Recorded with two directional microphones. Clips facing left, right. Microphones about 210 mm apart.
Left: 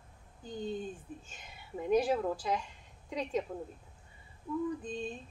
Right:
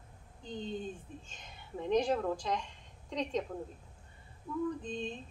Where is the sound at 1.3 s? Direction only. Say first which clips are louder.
Left 1 dB; 10° left (ahead or behind).